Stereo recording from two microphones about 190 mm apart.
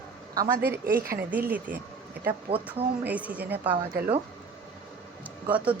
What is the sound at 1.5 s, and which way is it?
Speech, 10° right (ahead or behind).